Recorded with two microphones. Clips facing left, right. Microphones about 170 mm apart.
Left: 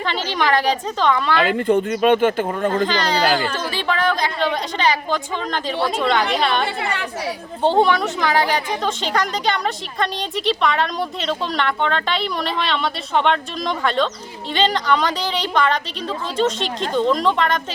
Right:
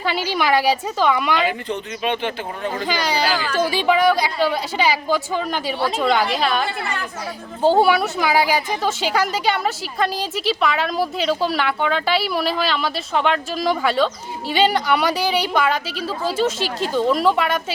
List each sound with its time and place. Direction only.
0.0 s a woman's voice: 10° right (ahead or behind)
1.5 s speech: 55° left (ahead or behind)
2.7 s a woman's voice: 10° right (ahead or behind)